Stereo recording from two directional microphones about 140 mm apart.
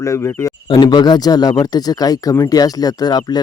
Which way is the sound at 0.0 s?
20° left (ahead or behind).